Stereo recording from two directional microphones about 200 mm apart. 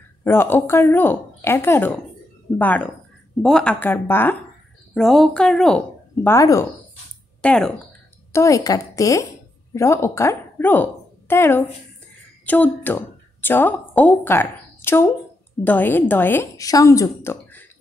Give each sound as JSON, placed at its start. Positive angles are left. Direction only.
{"t": 0.2, "sound": "a woman's voice", "side_deg": 10}